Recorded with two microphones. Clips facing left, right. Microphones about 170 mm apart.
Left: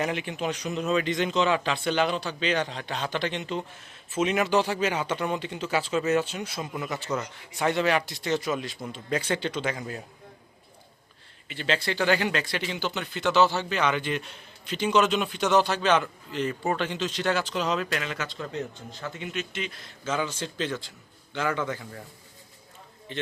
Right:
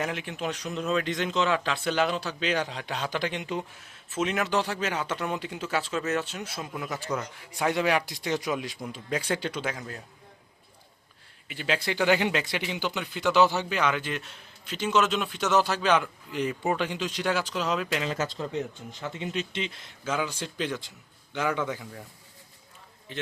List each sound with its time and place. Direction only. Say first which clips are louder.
0.0 s speech: left 2 dB; centre (ahead or behind)
4.1 s speech: left 3 dB; centre (ahead or behind)
11.4 s speech: left 1 dB; 10° right (ahead or behind)
17.8 s a man's voice: right 3 dB; 20° right (ahead or behind)
20.1 s speech: left 1 dB; 10° right (ahead or behind)
21.6 s speech: even; 5° right (ahead or behind)